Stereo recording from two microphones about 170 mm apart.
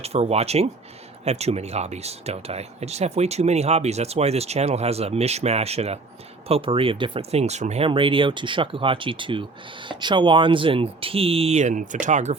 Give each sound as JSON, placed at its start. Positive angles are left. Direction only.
{"t": 0.0, "sound": "speech", "side_deg": -40}